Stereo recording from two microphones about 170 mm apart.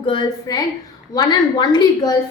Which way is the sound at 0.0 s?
25° left (ahead or behind).